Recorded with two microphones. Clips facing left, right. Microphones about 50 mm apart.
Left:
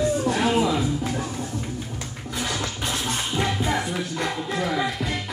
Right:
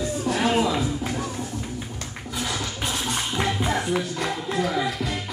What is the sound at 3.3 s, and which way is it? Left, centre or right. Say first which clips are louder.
Music: even; centre.